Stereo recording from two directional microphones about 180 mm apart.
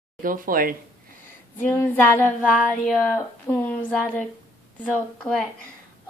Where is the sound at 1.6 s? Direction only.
10° left (ahead or behind).